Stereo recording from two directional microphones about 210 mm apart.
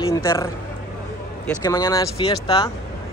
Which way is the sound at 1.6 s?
20° left (ahead or behind).